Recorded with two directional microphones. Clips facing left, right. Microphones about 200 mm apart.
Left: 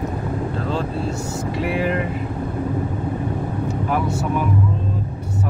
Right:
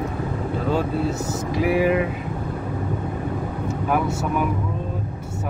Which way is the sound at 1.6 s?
5° right (ahead or behind).